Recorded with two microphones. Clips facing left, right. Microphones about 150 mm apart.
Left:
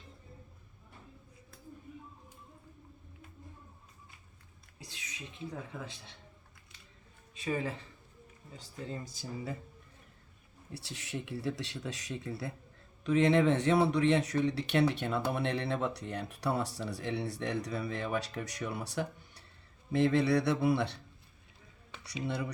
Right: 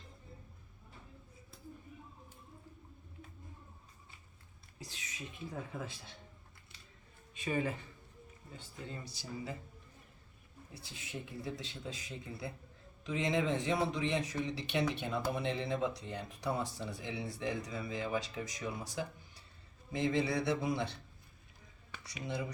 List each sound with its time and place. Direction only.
7.3 s speech: 30° left (ahead or behind)
8.5 s speech: 40° left (ahead or behind)
10.8 s speech: 75° left (ahead or behind)
22.0 s speech: 65° left (ahead or behind)